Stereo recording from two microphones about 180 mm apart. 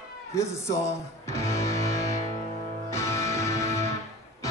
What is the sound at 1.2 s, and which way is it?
Music, 15° left (ahead or behind).